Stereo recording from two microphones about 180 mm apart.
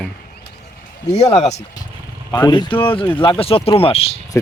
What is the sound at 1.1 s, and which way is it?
Speech, 35° left (ahead or behind).